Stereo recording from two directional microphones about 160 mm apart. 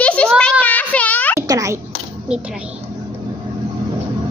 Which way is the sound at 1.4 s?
20° right (ahead or behind).